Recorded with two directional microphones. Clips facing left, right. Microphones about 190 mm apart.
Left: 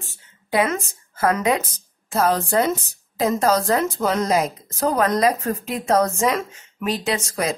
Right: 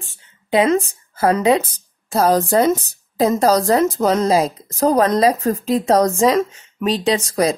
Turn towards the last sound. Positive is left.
turn(degrees=-35)  # may be behind; listen again after turning